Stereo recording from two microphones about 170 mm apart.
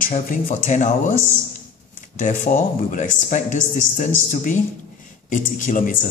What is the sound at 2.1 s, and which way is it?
Speech, 50° left (ahead or behind).